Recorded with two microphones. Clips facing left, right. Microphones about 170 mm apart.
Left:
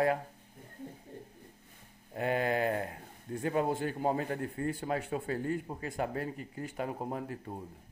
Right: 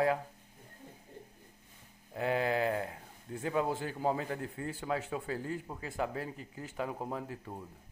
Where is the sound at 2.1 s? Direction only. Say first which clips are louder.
Left 1 dB; 50° left (ahead or behind).